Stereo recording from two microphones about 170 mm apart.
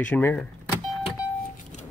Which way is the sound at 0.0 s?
10° left (ahead or behind).